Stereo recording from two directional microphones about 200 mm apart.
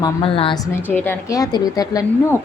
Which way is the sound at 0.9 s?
10° left (ahead or behind).